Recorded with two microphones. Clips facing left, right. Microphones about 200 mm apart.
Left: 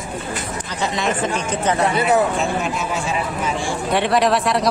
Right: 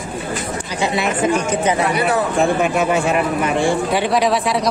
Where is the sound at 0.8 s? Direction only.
10° right (ahead or behind).